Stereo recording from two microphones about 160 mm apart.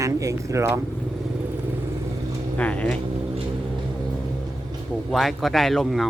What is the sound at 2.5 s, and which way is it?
Speech, 10° left (ahead or behind).